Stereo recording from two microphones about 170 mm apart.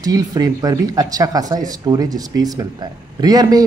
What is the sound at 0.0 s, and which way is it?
Speech, 20° right (ahead or behind).